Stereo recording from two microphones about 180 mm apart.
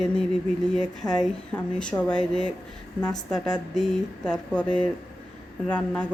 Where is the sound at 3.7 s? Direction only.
5° left (ahead or behind).